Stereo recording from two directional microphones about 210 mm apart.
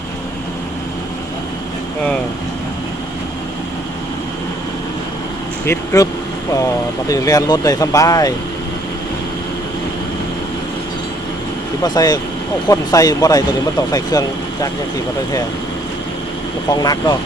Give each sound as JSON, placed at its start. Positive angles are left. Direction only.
{"t": 5.6, "sound": "speech", "side_deg": 15}
{"t": 7.1, "sound": "speech", "side_deg": 15}
{"t": 11.8, "sound": "speech", "side_deg": 20}
{"t": 16.7, "sound": "speech", "side_deg": 15}